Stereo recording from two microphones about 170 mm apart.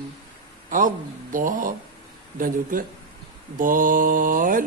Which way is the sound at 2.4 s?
55° right (ahead or behind).